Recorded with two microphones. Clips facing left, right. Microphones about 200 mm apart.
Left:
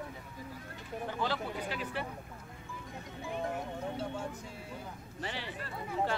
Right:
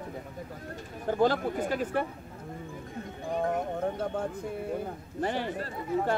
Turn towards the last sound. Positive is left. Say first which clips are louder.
# right 6 dB
turn(degrees=-45)  # may be behind; listen again after turning